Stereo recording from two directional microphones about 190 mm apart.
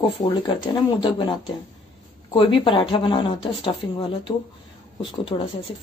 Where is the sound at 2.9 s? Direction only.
25° left (ahead or behind).